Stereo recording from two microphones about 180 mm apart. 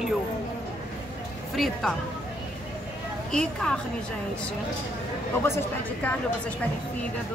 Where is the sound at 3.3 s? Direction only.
5° left (ahead or behind).